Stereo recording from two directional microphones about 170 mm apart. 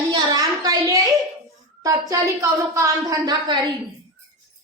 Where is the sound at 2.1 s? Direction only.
20° right (ahead or behind).